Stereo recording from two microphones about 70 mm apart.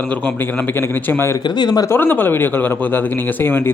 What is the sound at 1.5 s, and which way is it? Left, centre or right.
Speech, left.